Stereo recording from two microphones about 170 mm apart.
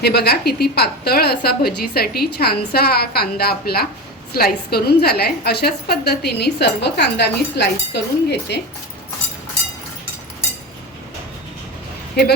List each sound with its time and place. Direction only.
0.0 s a woman's voice: 70° left (ahead or behind)